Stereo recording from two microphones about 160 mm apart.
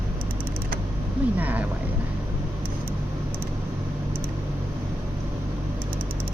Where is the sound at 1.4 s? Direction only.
10° right (ahead or behind).